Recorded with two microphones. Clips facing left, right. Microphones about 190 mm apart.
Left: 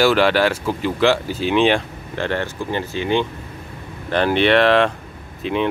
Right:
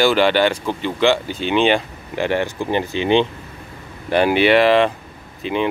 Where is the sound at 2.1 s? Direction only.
10° right (ahead or behind).